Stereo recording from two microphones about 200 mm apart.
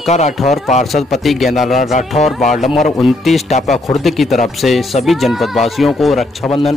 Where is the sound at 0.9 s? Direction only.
Centre (ahead or behind).